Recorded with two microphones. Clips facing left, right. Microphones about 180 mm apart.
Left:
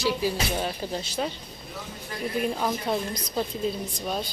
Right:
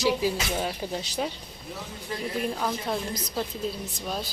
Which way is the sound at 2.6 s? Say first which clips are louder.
Left 2 dB; centre (ahead or behind).